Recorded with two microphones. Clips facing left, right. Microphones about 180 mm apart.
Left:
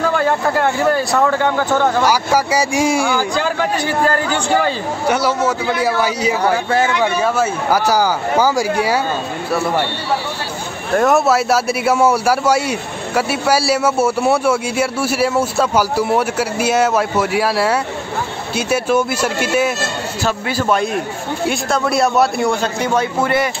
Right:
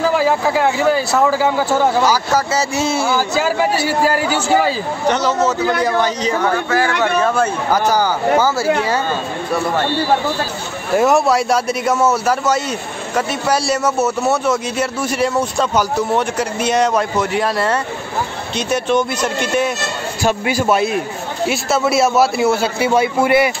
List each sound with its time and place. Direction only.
0.0 s a man's voice: 5° right (ahead or behind)
2.0 s a man's voice: 10° left (ahead or behind)
3.2 s a man's voice: 5° right (ahead or behind)
5.0 s a man's voice: 10° left (ahead or behind)
6.4 s speech: 30° left (ahead or behind)
7.2 s a man's voice: 10° left (ahead or behind)
11.0 s a man's voice: centre (ahead or behind)
20.2 s a man's voice: 10° right (ahead or behind)